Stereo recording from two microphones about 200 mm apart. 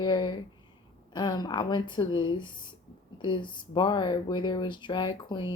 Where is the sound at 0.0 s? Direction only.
20° left (ahead or behind).